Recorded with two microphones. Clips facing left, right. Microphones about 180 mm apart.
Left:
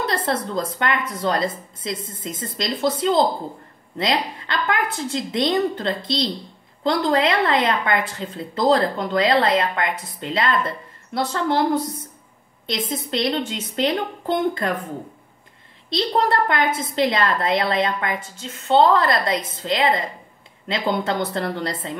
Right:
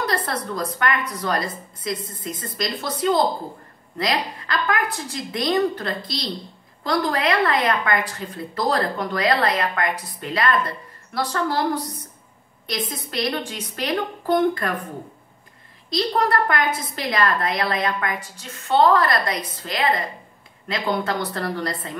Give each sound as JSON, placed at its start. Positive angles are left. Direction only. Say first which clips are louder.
{"t": 0.0, "sound": "a woman's voice", "louder": "left 2 dB", "side_deg": 25}
{"t": 15.9, "sound": "a woman's voice", "louder": "left 1 dB", "side_deg": 25}